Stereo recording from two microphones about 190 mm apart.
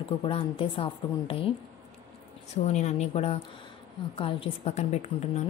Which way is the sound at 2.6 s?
35° left (ahead or behind).